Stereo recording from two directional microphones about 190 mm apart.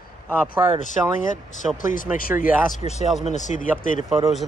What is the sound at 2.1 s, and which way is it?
Speech, 45° left (ahead or behind).